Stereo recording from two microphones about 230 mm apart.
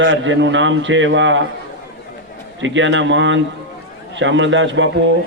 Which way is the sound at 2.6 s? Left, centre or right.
Right.